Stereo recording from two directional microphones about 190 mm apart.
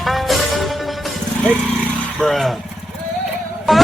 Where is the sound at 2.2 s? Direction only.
Centre (ahead or behind).